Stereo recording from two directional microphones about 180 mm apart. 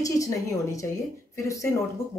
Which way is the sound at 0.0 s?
20° left (ahead or behind).